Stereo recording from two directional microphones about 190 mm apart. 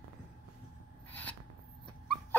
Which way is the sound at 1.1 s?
10° left (ahead or behind).